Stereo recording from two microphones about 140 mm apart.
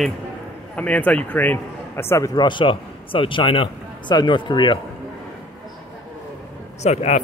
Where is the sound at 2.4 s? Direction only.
35° left (ahead or behind).